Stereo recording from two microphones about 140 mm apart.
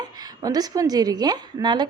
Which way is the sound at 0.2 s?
30° right (ahead or behind).